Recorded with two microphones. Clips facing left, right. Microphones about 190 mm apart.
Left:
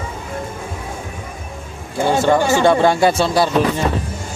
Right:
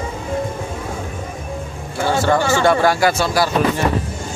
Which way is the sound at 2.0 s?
15° left (ahead or behind).